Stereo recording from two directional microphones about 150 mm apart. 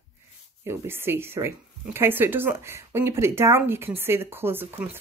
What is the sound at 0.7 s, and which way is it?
Speech, 15° right (ahead or behind).